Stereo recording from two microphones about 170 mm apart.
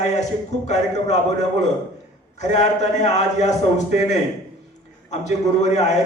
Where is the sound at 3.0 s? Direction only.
40° left (ahead or behind).